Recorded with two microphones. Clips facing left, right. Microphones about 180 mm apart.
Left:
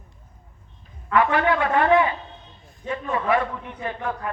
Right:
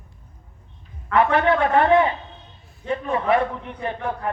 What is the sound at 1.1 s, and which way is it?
Speech, 25° right (ahead or behind).